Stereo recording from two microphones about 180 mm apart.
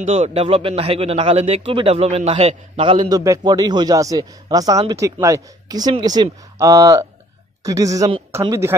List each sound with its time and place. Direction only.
0.0 s a man's voice: 35° right (ahead or behind); by 8.7 s 15° right (ahead or behind)